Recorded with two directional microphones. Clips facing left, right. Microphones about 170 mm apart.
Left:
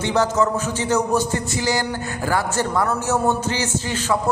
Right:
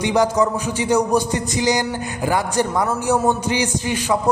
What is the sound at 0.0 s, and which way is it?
A man's voice, 15° right (ahead or behind).